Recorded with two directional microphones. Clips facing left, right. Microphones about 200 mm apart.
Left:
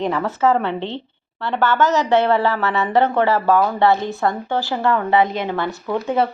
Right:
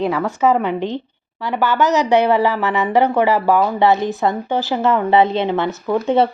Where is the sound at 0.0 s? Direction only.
10° right (ahead or behind).